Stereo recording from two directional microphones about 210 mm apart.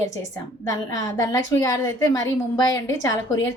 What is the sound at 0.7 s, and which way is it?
A woman's voice, 15° left (ahead or behind).